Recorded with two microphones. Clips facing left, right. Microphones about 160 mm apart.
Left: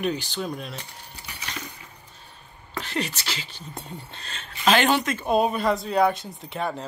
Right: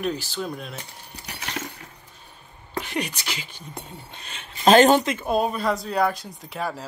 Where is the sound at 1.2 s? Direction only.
65° right (ahead or behind).